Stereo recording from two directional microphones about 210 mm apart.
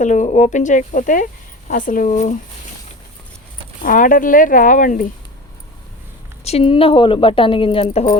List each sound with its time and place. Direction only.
0.0 s speech: 35° left (ahead or behind)
3.8 s speech: 40° left (ahead or behind)
6.4 s speech: 30° left (ahead or behind)